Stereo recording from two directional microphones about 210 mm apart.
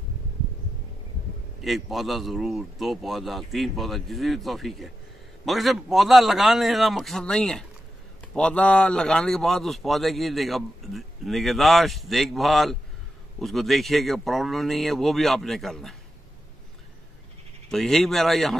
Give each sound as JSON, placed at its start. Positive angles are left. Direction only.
{"t": 1.6, "sound": "a man's voice", "side_deg": 0}
{"t": 17.6, "sound": "a man's voice", "side_deg": 0}